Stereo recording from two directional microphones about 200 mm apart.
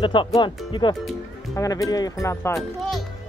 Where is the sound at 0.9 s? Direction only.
Centre (ahead or behind).